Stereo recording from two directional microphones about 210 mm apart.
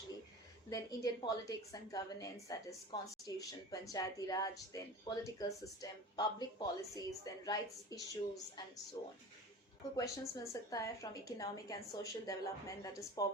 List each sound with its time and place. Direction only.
0.7 s speech: 15° left (ahead or behind)
9.9 s speech: 15° left (ahead or behind)